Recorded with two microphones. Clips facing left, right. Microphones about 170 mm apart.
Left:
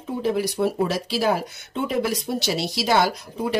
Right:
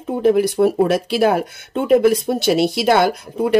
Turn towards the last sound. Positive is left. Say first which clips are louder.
# right 8 dB
turn(degrees=-55)  # may be behind; listen again after turning